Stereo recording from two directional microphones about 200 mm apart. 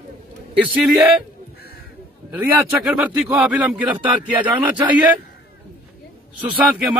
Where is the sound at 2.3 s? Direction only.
5° right (ahead or behind).